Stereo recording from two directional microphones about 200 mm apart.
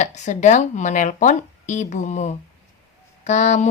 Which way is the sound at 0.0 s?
35° left (ahead or behind).